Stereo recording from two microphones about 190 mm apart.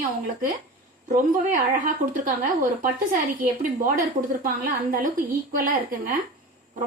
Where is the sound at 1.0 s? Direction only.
45° right (ahead or behind).